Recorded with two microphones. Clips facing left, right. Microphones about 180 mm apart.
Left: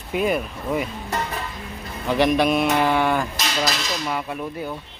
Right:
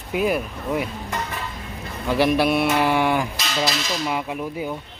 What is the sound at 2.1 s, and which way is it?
Speech, 5° right (ahead or behind).